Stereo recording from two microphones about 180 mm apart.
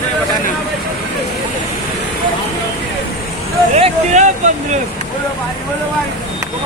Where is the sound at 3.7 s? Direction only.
40° right (ahead or behind).